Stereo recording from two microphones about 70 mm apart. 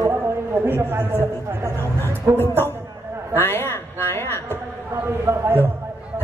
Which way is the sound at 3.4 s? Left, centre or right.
Left.